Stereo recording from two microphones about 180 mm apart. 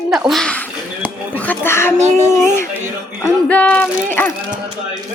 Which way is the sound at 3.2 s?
10° left (ahead or behind).